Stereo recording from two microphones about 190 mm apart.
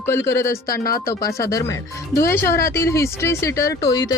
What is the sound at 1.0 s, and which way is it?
Speech, 15° left (ahead or behind).